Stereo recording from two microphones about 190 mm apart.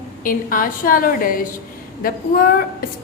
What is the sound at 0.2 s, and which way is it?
A woman's voice, 45° left (ahead or behind).